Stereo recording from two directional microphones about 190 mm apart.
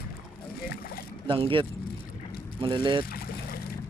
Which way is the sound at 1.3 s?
25° right (ahead or behind).